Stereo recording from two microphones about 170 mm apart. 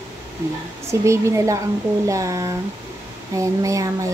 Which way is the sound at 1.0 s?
15° right (ahead or behind).